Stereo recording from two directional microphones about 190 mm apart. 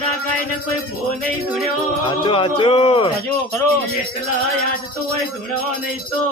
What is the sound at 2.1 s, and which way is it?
Speech, 25° left (ahead or behind).